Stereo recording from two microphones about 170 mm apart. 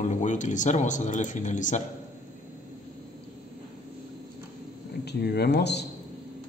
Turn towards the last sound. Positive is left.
turn(degrees=80)